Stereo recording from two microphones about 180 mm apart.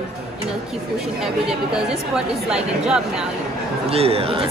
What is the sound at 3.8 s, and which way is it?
Speech, 35° right (ahead or behind).